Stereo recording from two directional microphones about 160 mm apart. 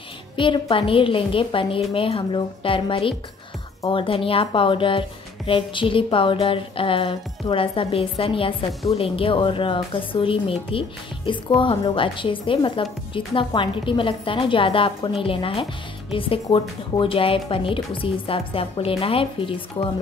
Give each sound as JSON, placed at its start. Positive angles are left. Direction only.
{"t": 0.4, "sound": "music", "side_deg": 30}